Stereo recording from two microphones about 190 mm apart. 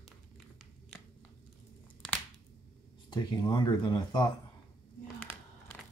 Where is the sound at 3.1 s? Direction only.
20° left (ahead or behind).